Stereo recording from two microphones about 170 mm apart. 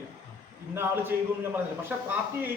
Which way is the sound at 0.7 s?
15° right (ahead or behind).